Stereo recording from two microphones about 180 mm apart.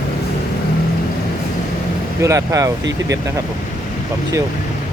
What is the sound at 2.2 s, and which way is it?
Speech, 15° right (ahead or behind).